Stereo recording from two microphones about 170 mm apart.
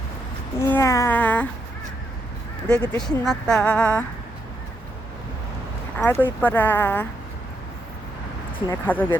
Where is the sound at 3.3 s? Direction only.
5° left (ahead or behind).